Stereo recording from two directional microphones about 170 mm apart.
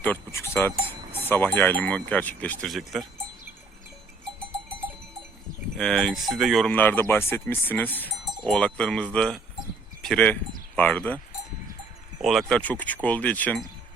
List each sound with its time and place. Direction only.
0.0 s cowbell: 15° left (ahead or behind)
1.2 s speech: 10° left (ahead or behind)
5.7 s speech: 5° left (ahead or behind)
12.2 s speech: centre (ahead or behind)